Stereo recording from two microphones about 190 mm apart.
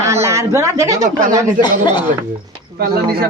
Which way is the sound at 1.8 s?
25° left (ahead or behind).